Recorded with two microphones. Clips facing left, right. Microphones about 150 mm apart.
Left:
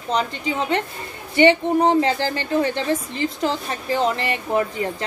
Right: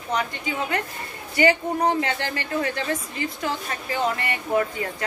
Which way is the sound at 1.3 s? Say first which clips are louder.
Left 5 dB; 25° left (ahead or behind).